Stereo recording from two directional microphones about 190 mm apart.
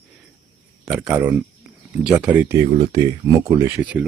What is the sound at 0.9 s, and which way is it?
Speech, 5° right (ahead or behind).